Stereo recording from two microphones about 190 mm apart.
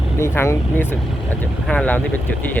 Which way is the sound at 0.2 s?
15° left (ahead or behind).